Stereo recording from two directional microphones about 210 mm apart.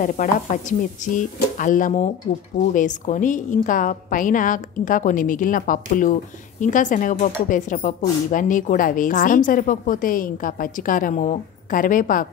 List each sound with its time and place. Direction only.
0.0 s speech: 40° left (ahead or behind)